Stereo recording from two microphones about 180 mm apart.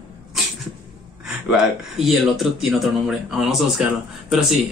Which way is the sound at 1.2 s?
Centre (ahead or behind).